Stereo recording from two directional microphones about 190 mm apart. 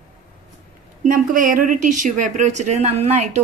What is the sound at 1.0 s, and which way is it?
A woman's voice, 45° right (ahead or behind).